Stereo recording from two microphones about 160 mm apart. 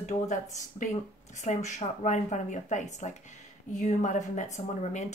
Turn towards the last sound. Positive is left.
turn(degrees=45)  # may be behind; listen again after turning